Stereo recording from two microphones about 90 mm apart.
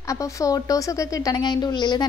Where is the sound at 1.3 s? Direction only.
55° left (ahead or behind).